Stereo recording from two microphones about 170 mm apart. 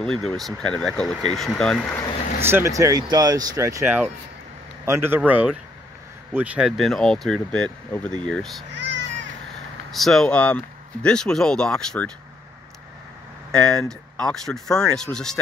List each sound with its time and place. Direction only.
0.0 s speech: 5° left (ahead or behind)
2.5 s speech: 20° right (ahead or behind); by 8.6 s 5° left (ahead or behind)
8.7 s a sound: 90° right
9.9 s speech: centre (ahead or behind)
13.5 s speech: 5° left (ahead or behind)